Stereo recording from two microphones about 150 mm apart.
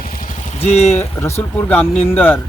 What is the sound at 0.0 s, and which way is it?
Vehicle, 65° left (ahead or behind).